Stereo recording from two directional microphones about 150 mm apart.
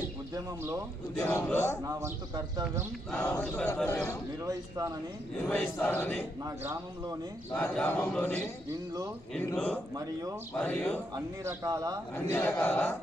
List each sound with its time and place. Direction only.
0.3 s a man's voice: 20° right (ahead or behind)
1.2 s speech: 15° left (ahead or behind)
1.9 s a man's voice: 20° right (ahead or behind)
3.1 s speech: 10° left (ahead or behind)
4.5 s a man's voice: 25° right (ahead or behind)
5.4 s speech: 10° left (ahead or behind)
6.4 s a man's voice: 20° right (ahead or behind)
7.5 s speech: 10° left (ahead or behind)
11.1 s a man's voice: 20° right (ahead or behind)
12.2 s speech: 15° left (ahead or behind)